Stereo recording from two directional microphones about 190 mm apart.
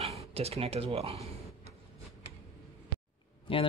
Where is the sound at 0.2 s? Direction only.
30° right (ahead or behind).